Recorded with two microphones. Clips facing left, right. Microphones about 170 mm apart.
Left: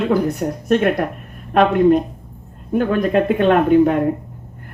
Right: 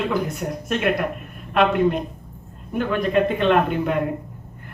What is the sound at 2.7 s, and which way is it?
Speech, 45° left (ahead or behind).